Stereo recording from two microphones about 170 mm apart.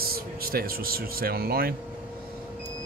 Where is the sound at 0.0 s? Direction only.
60° right (ahead or behind).